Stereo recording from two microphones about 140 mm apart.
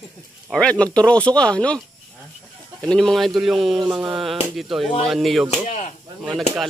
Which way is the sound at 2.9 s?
Centre (ahead or behind).